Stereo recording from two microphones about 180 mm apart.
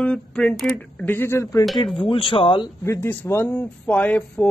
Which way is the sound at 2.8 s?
15° left (ahead or behind).